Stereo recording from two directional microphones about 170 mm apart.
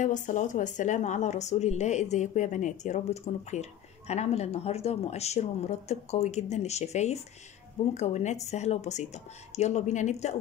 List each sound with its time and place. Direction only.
0.0 s a woman's voice: 45° left (ahead or behind)